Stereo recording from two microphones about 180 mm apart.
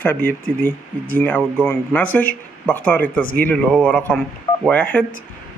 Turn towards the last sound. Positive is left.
turn(degrees=10)  # may be behind; listen again after turning